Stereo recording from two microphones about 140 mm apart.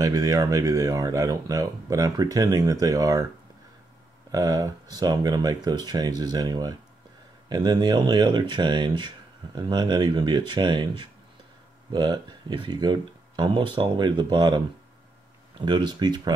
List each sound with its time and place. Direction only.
0.0 s speech: 25° right (ahead or behind)
4.3 s speech: 25° right (ahead or behind)
15.6 s speech: 30° right (ahead or behind)